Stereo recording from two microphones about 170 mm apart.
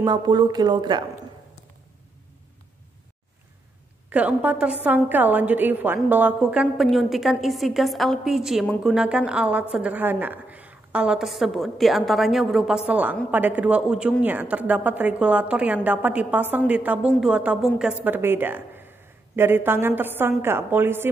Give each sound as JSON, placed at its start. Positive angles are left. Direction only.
{"t": 0.0, "sound": "speech", "side_deg": -25}
{"t": 4.1, "sound": "a woman's voice", "side_deg": -10}